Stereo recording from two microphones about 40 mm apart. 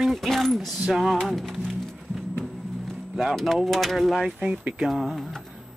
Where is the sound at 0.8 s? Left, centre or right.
Centre.